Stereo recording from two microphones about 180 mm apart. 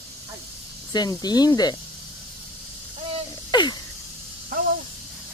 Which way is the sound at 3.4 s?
25° left (ahead or behind).